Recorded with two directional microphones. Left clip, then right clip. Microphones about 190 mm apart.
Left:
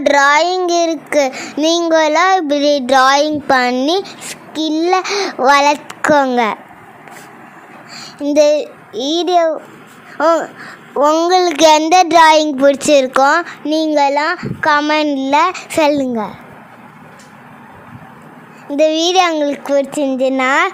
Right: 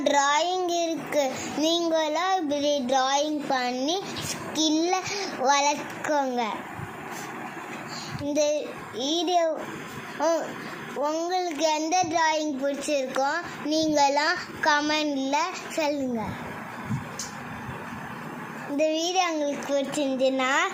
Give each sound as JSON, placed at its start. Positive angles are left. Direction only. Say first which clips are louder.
{"t": 0.0, "sound": "child singing", "louder": "left 12 dB", "side_deg": 55}
{"t": 8.2, "sound": "child singing", "louder": "left 14 dB", "side_deg": 60}
{"t": 18.8, "sound": "child singing", "louder": "left 13 dB", "side_deg": 55}